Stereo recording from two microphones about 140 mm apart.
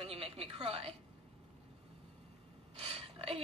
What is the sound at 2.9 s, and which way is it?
Gasp, 45° right (ahead or behind).